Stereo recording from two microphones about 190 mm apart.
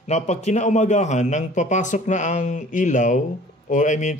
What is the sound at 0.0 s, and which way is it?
A man's voice, 35° left (ahead or behind).